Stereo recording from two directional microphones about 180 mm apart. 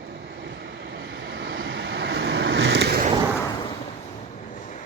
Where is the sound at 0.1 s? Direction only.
65° right (ahead or behind).